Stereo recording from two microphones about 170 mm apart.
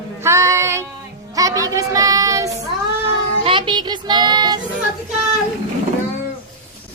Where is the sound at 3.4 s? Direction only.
30° right (ahead or behind).